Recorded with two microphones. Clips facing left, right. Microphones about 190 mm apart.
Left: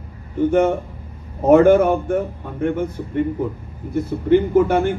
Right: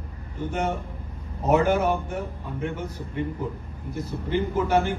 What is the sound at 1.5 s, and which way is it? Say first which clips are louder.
A man's voice: left 9 dB; 55° left (ahead or behind).